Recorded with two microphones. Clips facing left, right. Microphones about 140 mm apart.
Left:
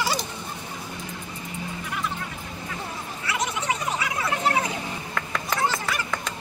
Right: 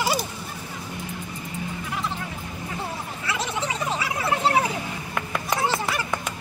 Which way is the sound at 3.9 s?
30° right (ahead or behind).